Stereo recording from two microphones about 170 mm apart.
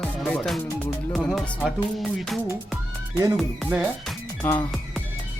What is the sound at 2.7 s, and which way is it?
Music, 15° right (ahead or behind).